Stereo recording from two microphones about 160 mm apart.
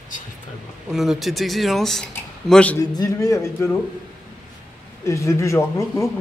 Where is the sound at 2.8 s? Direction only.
20° left (ahead or behind).